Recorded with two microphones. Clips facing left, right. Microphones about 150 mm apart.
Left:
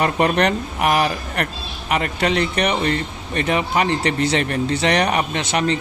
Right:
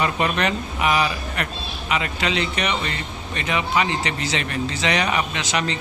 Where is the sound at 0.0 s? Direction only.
50° left (ahead or behind).